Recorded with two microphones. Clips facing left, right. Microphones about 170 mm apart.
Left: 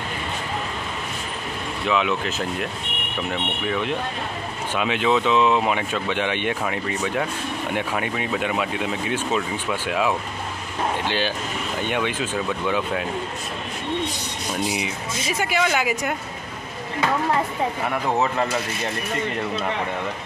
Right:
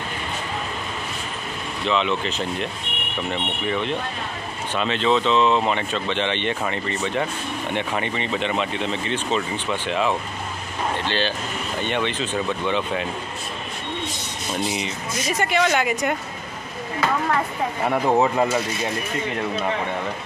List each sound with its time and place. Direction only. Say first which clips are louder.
1.9 s speech: even; 5° left (ahead or behind)
14.5 s speech: even; 10° left (ahead or behind)
17.8 s speech: right 6 dB; 15° right (ahead or behind)